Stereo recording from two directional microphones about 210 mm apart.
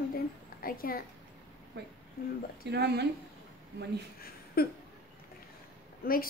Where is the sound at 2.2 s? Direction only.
45° left (ahead or behind).